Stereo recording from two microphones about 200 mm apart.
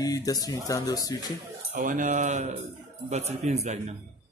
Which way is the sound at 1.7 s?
40° right (ahead or behind).